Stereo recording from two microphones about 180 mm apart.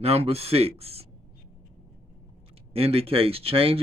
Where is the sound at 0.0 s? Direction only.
35° right (ahead or behind).